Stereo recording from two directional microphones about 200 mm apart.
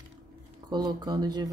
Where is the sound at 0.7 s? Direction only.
20° right (ahead or behind).